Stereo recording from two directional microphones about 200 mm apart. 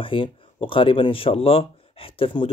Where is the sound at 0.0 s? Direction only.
25° left (ahead or behind).